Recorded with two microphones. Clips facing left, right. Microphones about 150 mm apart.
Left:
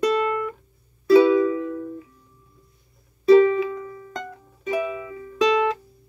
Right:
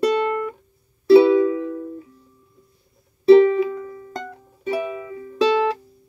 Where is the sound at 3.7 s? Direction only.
35° right (ahead or behind).